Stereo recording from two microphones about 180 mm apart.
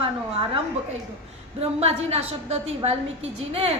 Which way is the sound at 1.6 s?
35° right (ahead or behind).